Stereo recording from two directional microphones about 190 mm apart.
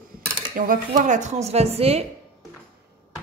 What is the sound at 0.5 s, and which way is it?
Speech, 45° right (ahead or behind).